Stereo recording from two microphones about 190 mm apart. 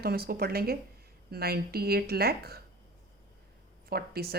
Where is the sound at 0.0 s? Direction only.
55° right (ahead or behind).